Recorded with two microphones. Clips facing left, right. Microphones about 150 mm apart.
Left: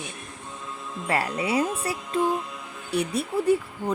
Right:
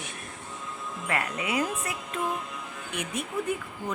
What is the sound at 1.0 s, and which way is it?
A woman's voice, 30° left (ahead or behind).